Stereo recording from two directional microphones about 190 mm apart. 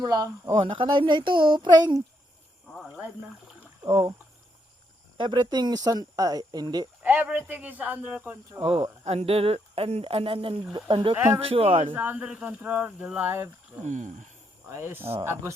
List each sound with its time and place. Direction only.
0.0 s speech: 20° right (ahead or behind)
2.6 s a sound: centre (ahead or behind)
3.8 s speech: 25° right (ahead or behind)
5.1 s speech: 25° right (ahead or behind)
7.0 s speech: 10° right (ahead or behind)
9.0 s speech: 30° right (ahead or behind)
11.1 s speech: 10° right (ahead or behind)
11.3 s speech: 30° right (ahead or behind)
11.9 s speech: 10° right (ahead or behind)
13.8 s speech: 40° right (ahead or behind)
14.7 s speech: 15° right (ahead or behind)